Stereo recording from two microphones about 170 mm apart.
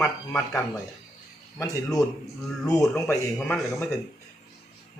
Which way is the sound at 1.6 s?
20° left (ahead or behind).